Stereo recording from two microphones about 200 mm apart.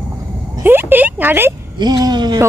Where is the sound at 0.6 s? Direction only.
10° right (ahead or behind).